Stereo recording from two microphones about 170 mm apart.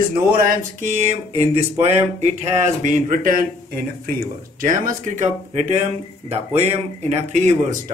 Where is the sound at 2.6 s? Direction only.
45° right (ahead or behind).